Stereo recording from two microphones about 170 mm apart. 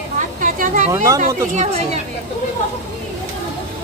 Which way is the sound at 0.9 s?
20° right (ahead or behind).